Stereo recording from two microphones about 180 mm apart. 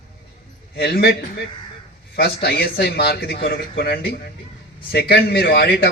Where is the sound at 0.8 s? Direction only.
60° left (ahead or behind).